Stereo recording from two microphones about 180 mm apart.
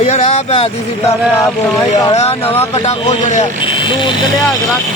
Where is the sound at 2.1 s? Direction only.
35° left (ahead or behind).